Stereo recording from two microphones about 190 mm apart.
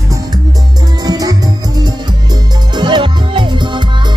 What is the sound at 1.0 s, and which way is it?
Music, 20° right (ahead or behind).